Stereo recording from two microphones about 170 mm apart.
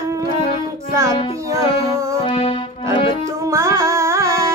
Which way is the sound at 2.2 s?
35° left (ahead or behind).